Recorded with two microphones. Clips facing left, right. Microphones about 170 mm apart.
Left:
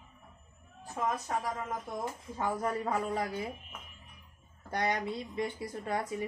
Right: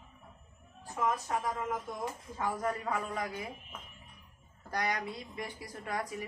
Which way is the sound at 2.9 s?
30° left (ahead or behind).